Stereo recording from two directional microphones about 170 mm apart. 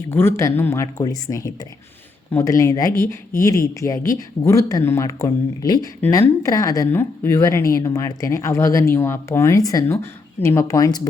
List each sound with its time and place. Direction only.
0.1 s speech: 15° left (ahead or behind)